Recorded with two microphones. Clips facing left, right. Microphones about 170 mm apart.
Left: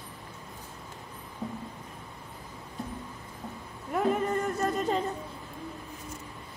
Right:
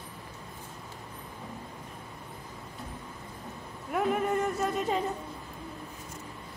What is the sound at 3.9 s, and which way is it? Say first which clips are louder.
Music: left 1 dB; 5° right (ahead or behind).